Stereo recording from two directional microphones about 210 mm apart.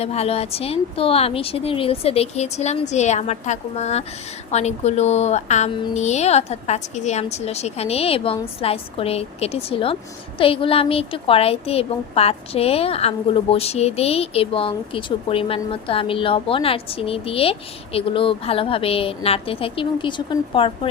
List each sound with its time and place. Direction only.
0.0 s a woman's voice: 30° left (ahead or behind)